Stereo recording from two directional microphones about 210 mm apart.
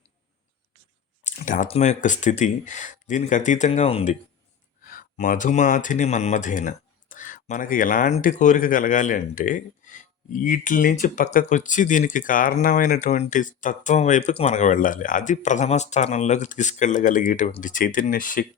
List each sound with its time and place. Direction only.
1.2 s speech: 35° left (ahead or behind)